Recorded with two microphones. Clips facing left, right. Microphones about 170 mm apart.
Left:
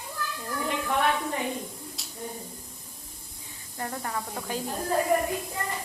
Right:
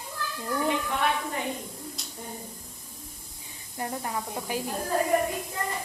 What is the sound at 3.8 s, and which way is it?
Speech, 15° right (ahead or behind).